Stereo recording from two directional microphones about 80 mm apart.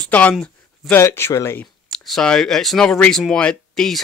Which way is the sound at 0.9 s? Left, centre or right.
Left.